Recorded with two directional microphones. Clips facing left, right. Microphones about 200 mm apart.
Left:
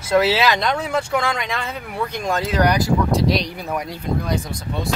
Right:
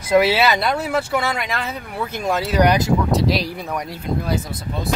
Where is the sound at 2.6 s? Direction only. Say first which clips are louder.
Right 2 dB; 20° right (ahead or behind).